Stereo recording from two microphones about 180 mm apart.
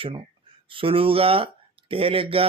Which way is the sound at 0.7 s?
30° right (ahead or behind).